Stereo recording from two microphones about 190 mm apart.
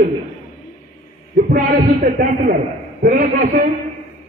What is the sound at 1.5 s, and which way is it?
A man's voice, 50° right (ahead or behind).